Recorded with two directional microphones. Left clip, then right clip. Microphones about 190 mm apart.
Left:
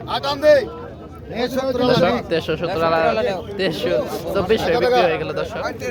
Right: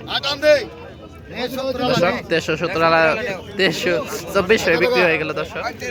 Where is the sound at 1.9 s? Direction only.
10° right (ahead or behind).